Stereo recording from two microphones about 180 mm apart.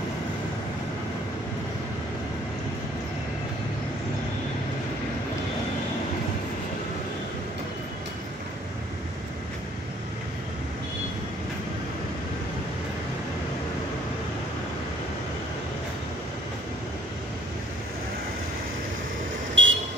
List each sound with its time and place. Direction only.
19.6 s vehicle: 90° right